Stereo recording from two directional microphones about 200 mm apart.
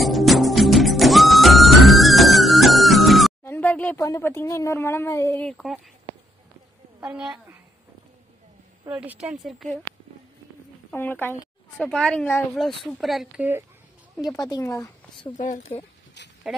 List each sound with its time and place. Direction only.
0.0 s music: centre (ahead or behind)
3.4 s oink: 10° left (ahead or behind)
4.0 s speech: 15° left (ahead or behind)
7.0 s a woman's voice: 5° right (ahead or behind)
8.8 s speech: 10° right (ahead or behind)
10.9 s speech: 10° left (ahead or behind)
14.2 s speech: 20° left (ahead or behind)
15.3 s speech: 35° left (ahead or behind)
16.2 s a sound: 60° left (ahead or behind)